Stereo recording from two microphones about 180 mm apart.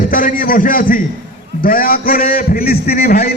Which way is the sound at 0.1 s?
50° left (ahead or behind).